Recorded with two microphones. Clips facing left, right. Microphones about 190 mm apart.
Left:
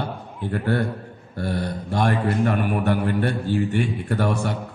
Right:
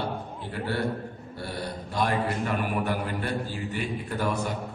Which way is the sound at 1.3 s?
55° left (ahead or behind).